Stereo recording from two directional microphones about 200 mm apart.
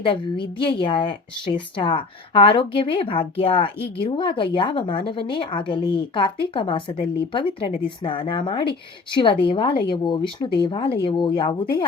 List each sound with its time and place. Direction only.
0.0 s a woman's voice: 25° left (ahead or behind)